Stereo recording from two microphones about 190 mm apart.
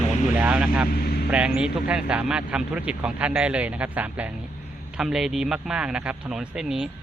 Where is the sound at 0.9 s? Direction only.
55° left (ahead or behind).